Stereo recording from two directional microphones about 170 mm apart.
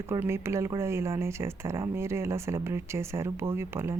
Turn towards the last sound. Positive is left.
turn(degrees=-15)  # may be behind; listen again after turning